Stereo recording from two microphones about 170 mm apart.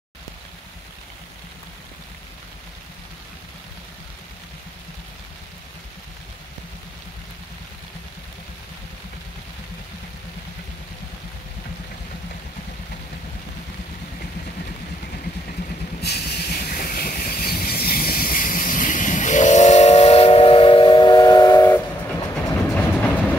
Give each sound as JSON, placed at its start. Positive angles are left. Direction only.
{"t": 16.0, "sound": "train", "side_deg": 75}